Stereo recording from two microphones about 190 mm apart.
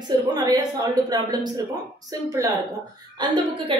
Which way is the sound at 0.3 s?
20° right (ahead or behind).